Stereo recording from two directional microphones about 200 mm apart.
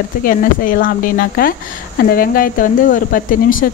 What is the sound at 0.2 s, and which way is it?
Speech, 45° left (ahead or behind).